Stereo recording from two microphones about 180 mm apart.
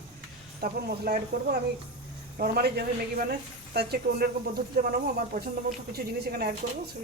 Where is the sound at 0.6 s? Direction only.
60° right (ahead or behind).